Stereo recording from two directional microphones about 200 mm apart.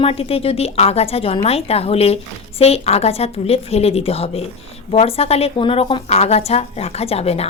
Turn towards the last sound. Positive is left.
turn(degrees=30)  # may be behind; listen again after turning